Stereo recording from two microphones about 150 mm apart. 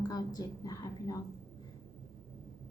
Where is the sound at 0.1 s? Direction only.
25° left (ahead or behind).